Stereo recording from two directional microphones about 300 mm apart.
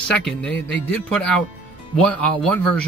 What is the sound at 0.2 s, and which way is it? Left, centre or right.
Speech, centre.